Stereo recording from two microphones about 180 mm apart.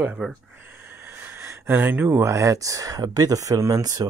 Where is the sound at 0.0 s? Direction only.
10° right (ahead or behind).